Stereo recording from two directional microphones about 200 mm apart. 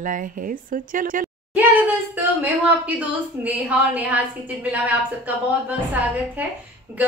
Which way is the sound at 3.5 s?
5° right (ahead or behind).